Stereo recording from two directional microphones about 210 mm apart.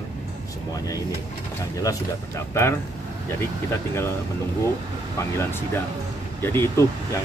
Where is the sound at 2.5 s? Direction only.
10° left (ahead or behind).